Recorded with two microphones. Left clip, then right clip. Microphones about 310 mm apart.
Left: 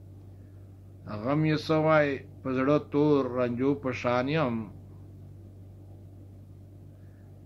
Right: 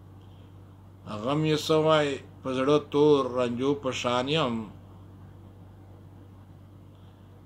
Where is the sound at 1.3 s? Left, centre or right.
Right.